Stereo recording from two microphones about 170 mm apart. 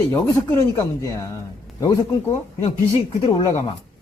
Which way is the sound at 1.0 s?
20° left (ahead or behind).